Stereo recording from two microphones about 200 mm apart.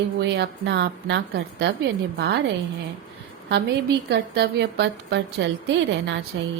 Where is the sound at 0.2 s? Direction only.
60° right (ahead or behind).